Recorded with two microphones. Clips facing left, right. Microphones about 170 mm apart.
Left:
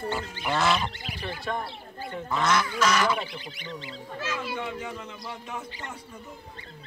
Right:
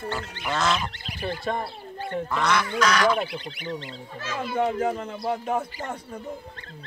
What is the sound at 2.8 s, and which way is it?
Speech, 5° left (ahead or behind).